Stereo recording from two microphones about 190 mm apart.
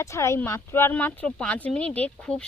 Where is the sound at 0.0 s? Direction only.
15° left (ahead or behind).